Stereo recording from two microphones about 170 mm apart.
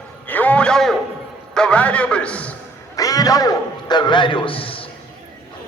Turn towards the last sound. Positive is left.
turn(degrees=30)  # may be behind; listen again after turning